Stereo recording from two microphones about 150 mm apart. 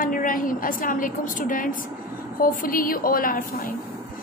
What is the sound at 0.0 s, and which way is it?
A woman's voice, 65° left (ahead or behind).